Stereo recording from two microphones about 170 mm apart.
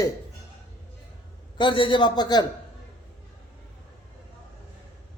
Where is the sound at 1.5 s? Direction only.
30° left (ahead or behind).